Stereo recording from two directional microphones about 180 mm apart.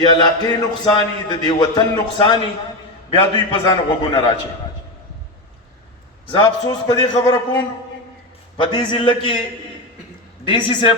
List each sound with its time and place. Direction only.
0.0 s a man's voice: 25° left (ahead or behind)
6.3 s a man's voice: 20° left (ahead or behind)
10.4 s a man's voice: 30° left (ahead or behind)